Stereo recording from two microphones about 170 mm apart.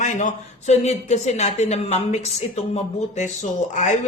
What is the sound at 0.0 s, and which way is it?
Speech, 45° left (ahead or behind).